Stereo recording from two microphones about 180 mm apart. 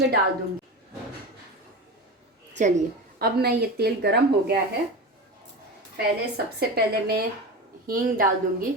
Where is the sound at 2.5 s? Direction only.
40° right (ahead or behind).